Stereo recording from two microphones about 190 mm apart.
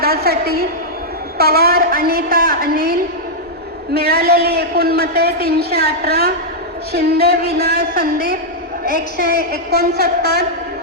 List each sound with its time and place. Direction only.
0.0 s a woman's voice: 55° right (ahead or behind)
3.9 s a man's voice: 55° right (ahead or behind)